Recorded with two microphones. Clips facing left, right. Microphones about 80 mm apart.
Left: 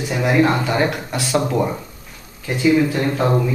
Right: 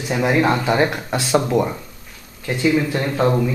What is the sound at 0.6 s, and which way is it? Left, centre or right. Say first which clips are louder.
Speech: right 1 dB; centre.